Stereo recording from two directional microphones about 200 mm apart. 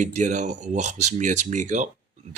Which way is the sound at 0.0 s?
35° right (ahead or behind).